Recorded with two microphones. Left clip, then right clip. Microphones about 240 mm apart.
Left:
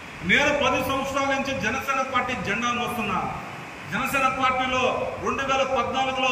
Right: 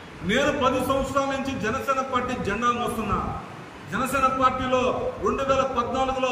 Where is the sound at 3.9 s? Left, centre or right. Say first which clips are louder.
Right 1 dB; centre.